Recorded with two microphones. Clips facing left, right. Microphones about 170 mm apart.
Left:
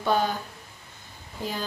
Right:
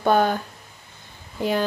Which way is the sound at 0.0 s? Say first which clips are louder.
Right 6 dB; 55° right (ahead or behind).